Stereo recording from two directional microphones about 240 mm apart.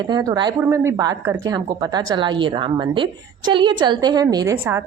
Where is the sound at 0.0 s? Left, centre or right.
Centre.